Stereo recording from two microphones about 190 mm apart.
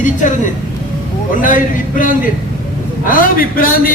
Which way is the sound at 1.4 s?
45° left (ahead or behind).